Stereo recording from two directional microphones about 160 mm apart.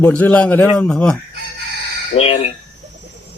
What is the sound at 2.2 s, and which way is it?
Speech, 35° left (ahead or behind).